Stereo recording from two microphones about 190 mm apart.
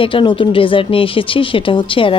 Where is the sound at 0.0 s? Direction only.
25° left (ahead or behind).